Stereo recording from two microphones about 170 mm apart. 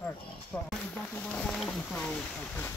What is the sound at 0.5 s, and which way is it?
Speech, 15° left (ahead or behind).